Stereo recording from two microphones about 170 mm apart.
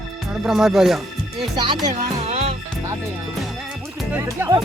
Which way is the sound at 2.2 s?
40° right (ahead or behind).